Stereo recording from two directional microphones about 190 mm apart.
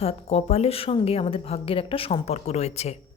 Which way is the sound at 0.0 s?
35° left (ahead or behind).